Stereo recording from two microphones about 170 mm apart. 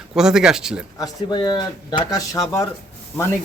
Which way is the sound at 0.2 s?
5° right (ahead or behind).